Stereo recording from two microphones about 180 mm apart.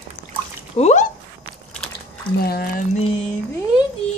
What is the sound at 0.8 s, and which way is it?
Speech, 40° left (ahead or behind).